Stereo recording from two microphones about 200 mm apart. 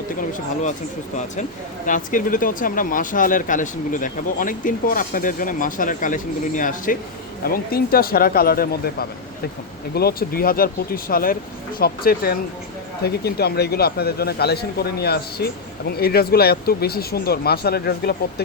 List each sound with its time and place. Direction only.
1.9 s speech: 40° left (ahead or behind)